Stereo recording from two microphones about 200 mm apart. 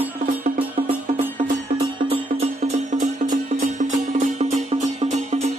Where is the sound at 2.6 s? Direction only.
35° right (ahead or behind).